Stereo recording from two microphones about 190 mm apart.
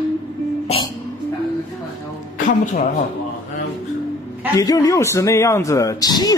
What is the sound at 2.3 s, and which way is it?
Speech, 45° left (ahead or behind).